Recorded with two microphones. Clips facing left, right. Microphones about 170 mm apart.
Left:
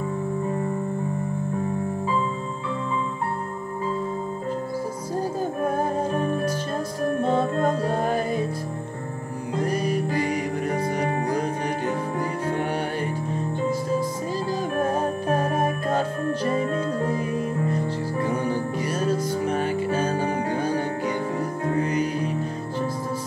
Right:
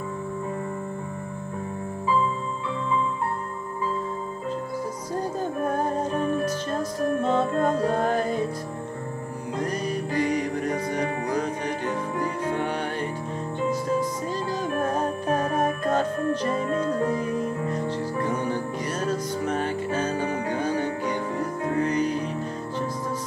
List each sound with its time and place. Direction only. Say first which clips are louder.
5.4 s music: left 1 dB; 10° left (ahead or behind)
9.6 s music: left 4 dB; 10° left (ahead or behind)
14.8 s music: left 3 dB; 10° left (ahead or behind)
16.7 s music: right 1 dB; 30° left (ahead or behind)
17.2 s music: left 1 dB; 10° left (ahead or behind)